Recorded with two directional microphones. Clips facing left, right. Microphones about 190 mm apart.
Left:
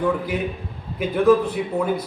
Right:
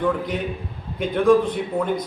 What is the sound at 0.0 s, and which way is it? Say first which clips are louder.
A man's voice: left 1 dB; 5° left (ahead or behind).